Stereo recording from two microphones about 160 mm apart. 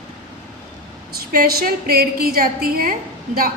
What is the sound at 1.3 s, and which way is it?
A woman's voice, 70° right (ahead or behind).